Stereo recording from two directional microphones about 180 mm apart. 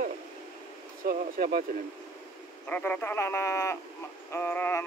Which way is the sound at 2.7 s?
10° left (ahead or behind).